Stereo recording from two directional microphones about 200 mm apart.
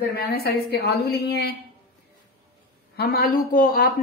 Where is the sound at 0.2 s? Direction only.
50° left (ahead or behind).